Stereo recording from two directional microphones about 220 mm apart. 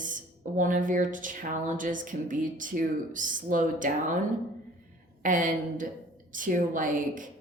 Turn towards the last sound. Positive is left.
turn(degrees=-35)  # may be behind; listen again after turning